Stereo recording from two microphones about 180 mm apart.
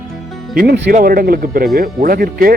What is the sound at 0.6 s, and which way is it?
Speech, 65° right (ahead or behind).